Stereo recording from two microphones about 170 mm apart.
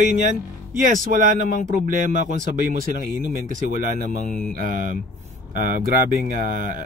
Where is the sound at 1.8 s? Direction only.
50° right (ahead or behind).